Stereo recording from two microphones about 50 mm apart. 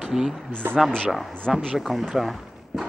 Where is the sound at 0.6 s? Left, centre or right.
Right.